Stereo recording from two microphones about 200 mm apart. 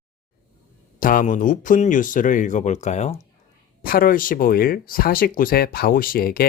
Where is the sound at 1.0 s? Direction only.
45° left (ahead or behind).